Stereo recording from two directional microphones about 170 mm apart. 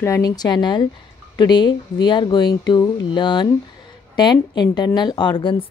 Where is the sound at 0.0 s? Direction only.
20° left (ahead or behind).